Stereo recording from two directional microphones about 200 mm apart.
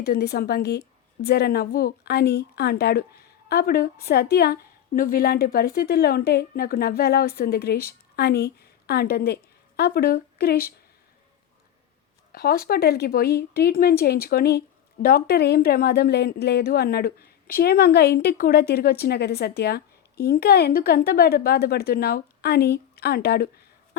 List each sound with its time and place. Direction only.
0.0 s a woman's voice: 50° left (ahead or behind)
12.3 s a woman's voice: 50° left (ahead or behind)